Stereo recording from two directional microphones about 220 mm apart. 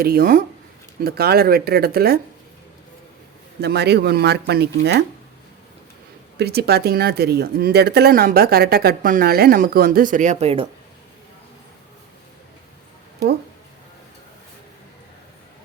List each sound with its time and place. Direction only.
0.0 s speech: 45° right (ahead or behind)
3.6 s speech: 50° right (ahead or behind)
6.3 s speech: 45° right (ahead or behind); by 10.7 s 25° right (ahead or behind)